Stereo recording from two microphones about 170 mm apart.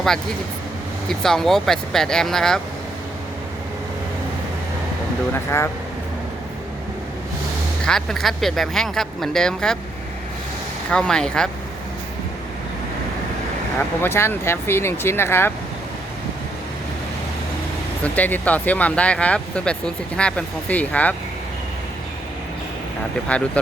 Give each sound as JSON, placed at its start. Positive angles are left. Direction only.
{"t": 1.0, "sound": "speech", "side_deg": 5}
{"t": 5.5, "sound": "speech", "side_deg": 15}
{"t": 7.9, "sound": "speech", "side_deg": 0}
{"t": 10.9, "sound": "speech", "side_deg": 5}
{"t": 14.0, "sound": "speech", "side_deg": 15}
{"t": 18.0, "sound": "speech", "side_deg": 10}